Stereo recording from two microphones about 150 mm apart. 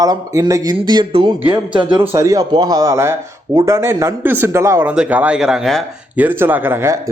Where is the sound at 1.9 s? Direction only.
15° right (ahead or behind); by 5.8 s centre (ahead or behind).